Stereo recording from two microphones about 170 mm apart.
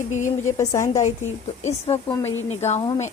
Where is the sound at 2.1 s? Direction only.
15° left (ahead or behind).